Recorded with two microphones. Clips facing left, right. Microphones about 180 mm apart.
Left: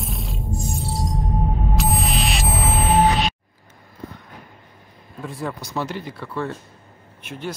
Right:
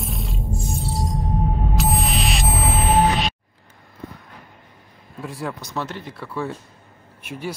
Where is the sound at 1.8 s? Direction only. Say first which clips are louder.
Even; centre (ahead or behind).